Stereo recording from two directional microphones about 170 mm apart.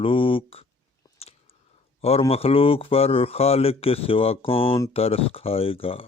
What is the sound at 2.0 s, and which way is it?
Speech, 35° left (ahead or behind).